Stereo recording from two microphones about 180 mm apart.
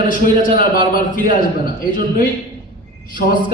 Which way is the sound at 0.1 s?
50° left (ahead or behind).